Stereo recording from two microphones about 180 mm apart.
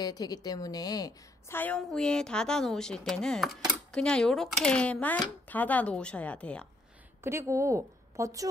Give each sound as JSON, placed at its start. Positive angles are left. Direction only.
{"t": 0.0, "sound": "a woman's voice", "side_deg": 20}
{"t": 7.2, "sound": "a woman's voice", "side_deg": -15}